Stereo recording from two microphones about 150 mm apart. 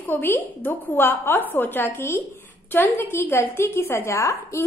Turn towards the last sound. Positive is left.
turn(degrees=20)  # may be behind; listen again after turning